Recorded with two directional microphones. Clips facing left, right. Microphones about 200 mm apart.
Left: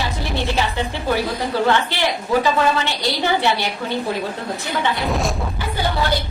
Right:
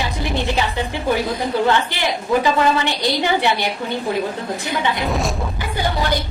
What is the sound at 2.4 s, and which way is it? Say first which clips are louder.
A woman's voice: right 1 dB; 15° right (ahead or behind).